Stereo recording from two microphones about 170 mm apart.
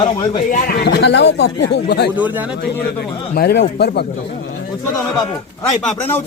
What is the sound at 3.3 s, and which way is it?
Speech, 65° left (ahead or behind).